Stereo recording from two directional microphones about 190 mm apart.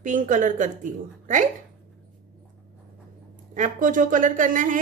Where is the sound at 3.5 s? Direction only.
45° right (ahead or behind).